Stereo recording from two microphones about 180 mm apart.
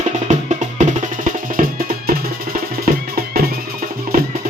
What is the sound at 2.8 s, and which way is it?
Music, 55° right (ahead or behind).